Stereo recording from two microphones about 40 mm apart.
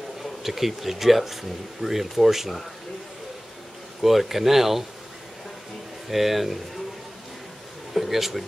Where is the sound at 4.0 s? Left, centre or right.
Centre.